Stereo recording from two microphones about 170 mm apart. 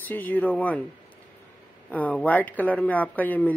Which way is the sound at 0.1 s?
10° left (ahead or behind).